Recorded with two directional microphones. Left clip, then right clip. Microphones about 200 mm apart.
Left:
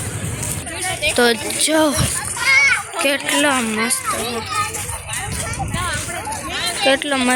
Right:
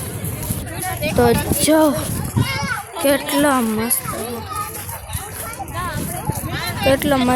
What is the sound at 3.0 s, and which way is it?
Speech, 20° right (ahead or behind).